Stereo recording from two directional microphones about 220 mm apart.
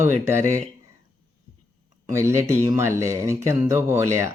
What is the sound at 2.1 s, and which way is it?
Speech, 10° right (ahead or behind).